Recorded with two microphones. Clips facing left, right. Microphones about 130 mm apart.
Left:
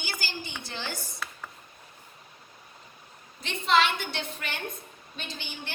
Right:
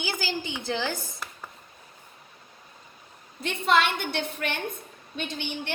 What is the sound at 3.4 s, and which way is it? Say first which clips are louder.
A woman's voice: right 1 dB; 55° right (ahead or behind).